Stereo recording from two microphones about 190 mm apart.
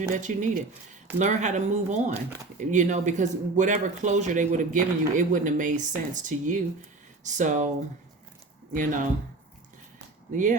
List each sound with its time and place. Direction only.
0.1 s speech: 40° right (ahead or behind)
8.7 s speech: 45° right (ahead or behind)
10.3 s speech: 40° right (ahead or behind)